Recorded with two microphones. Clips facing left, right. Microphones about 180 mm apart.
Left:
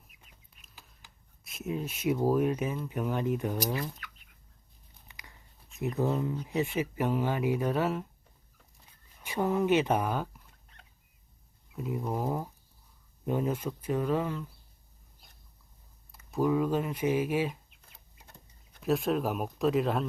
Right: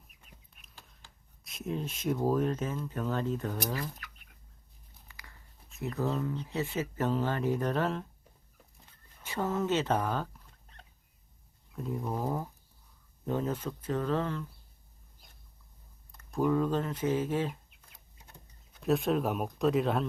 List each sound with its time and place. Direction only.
0.6 s a sound: 5° left (ahead or behind)
1.5 s speech: 5° left (ahead or behind)
5.0 s dog: 20° left (ahead or behind)
5.7 s speech: 15° left (ahead or behind)
9.2 s speech: 15° left (ahead or behind)
11.7 s speech: 5° left (ahead or behind)
16.1 s speech: 5° left (ahead or behind)
18.8 s speech: centre (ahead or behind)